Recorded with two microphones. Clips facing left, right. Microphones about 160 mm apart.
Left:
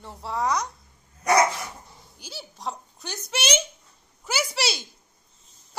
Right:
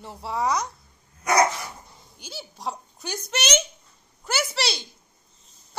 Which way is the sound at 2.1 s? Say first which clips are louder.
Right 2 dB; centre (ahead or behind).